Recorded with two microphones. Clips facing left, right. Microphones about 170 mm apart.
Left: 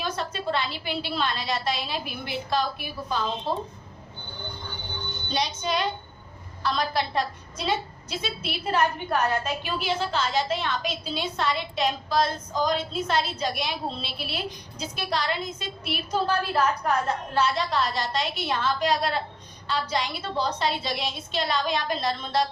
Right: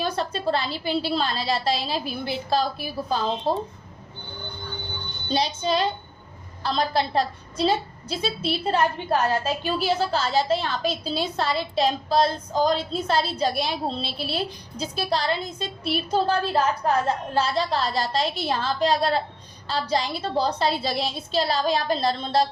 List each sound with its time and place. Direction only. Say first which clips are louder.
0.0 s a woman's voice: right 4 dB; 35° right (ahead or behind)
5.3 s a woman's voice: right 4 dB; 30° right (ahead or behind)